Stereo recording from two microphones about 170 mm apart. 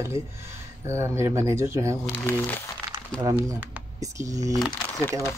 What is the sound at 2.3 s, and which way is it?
Speech, 10° left (ahead or behind).